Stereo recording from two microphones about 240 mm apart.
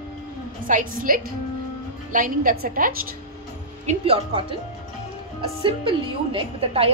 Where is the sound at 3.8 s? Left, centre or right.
Right.